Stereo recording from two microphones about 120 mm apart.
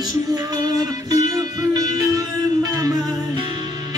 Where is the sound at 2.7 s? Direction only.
30° right (ahead or behind).